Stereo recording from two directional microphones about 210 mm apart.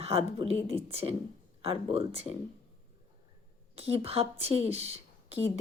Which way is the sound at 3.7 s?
30° right (ahead or behind).